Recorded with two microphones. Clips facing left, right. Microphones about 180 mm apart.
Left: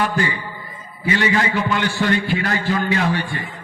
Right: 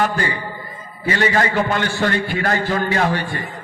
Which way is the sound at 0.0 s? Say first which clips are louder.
Right 1 dB; 45° right (ahead or behind).